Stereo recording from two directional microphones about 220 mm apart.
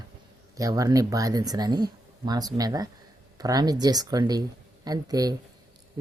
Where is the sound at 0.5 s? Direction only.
15° right (ahead or behind).